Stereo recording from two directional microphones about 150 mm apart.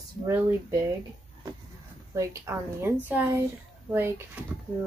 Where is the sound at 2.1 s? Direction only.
15° right (ahead or behind).